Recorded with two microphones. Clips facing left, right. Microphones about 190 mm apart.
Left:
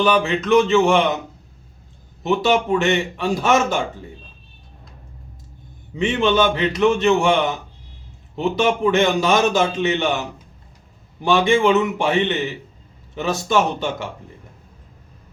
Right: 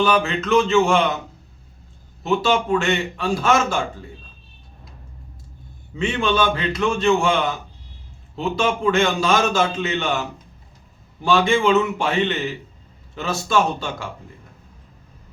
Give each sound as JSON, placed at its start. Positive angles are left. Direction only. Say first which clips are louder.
{"t": 0.0, "sound": "a man's voice", "louder": "left 1 dB", "side_deg": 15}
{"t": 2.2, "sound": "a man's voice", "louder": "left 2 dB", "side_deg": 20}
{"t": 6.0, "sound": "a man's voice", "louder": "left 3 dB", "side_deg": 20}